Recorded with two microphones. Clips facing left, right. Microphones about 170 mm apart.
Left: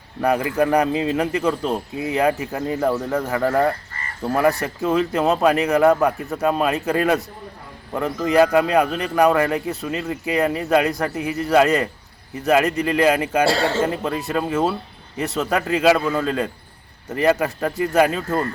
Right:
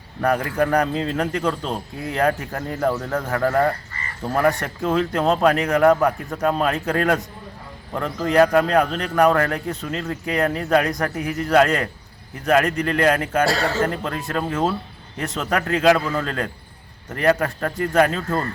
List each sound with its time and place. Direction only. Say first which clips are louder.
0.2 s speech: left 1 dB; 10° left (ahead or behind)
13.5 s a man's voice: left 2 dB; 30° left (ahead or behind)
13.8 s speech: left 2 dB; 5° left (ahead or behind)